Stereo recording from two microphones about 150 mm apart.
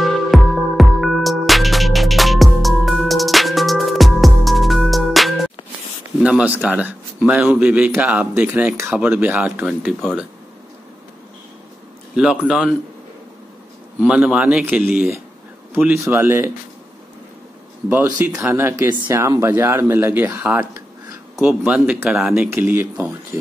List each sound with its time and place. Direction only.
0.0 s music: centre (ahead or behind)
6.2 s speech: 10° right (ahead or behind)
12.2 s speech: 5° right (ahead or behind)
14.0 s speech: 5° right (ahead or behind)
17.8 s speech: 10° right (ahead or behind)